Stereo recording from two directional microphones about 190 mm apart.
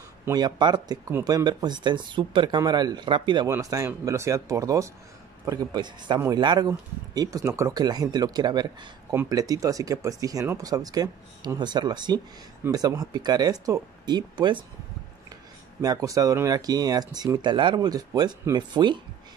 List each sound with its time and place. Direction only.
0.2 s speech: 20° right (ahead or behind)
15.8 s speech: 20° right (ahead or behind)